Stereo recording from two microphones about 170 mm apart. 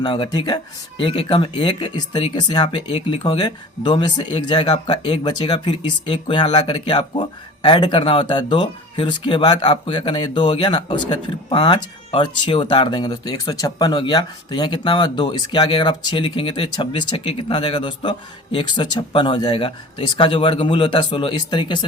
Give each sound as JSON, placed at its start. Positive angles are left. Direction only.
{"t": 0.0, "sound": "speech", "side_deg": 25}